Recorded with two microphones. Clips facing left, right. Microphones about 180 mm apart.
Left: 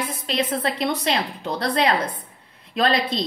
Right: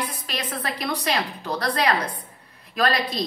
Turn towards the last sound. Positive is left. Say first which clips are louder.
# left 2 dB
turn(degrees=25)  # may be behind; listen again after turning